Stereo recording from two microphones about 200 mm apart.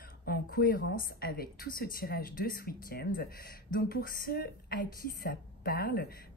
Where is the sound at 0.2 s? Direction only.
50° left (ahead or behind).